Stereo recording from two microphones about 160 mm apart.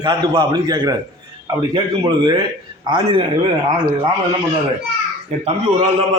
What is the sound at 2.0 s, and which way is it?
Speech, 25° right (ahead or behind).